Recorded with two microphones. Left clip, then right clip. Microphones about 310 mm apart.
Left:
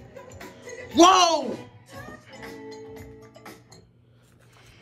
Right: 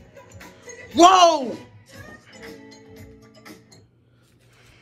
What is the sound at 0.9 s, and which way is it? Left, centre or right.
Speech, centre.